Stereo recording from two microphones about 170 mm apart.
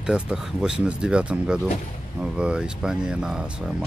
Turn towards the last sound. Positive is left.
turn(degrees=-5)  # may be behind; listen again after turning